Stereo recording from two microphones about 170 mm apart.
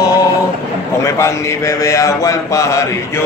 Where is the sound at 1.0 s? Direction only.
15° left (ahead or behind).